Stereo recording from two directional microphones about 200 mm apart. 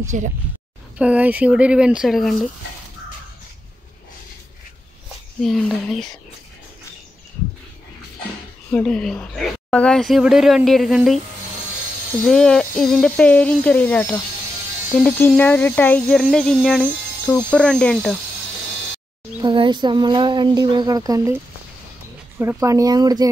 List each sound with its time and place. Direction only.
0.1 s speech: 35° right (ahead or behind)
0.9 s speech: 5° right (ahead or behind)
5.4 s speech: centre (ahead or behind)
8.7 s speech: 5° left (ahead or behind)
12.3 s speech: 5° left (ahead or behind)
19.4 s speech: 25° right (ahead or behind)
22.4 s speech: 15° right (ahead or behind)